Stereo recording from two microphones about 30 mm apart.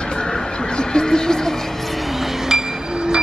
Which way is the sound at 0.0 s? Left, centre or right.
Left.